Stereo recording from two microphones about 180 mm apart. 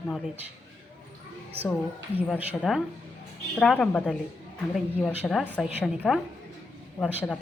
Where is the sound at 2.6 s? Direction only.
Centre (ahead or behind).